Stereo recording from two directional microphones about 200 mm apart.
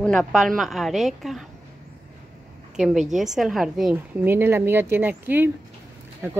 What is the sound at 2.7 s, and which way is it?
A woman's voice, centre (ahead or behind).